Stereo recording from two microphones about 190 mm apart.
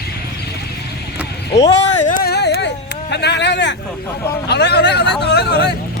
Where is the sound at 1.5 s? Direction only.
35° left (ahead or behind); by 3.7 s 65° left (ahead or behind).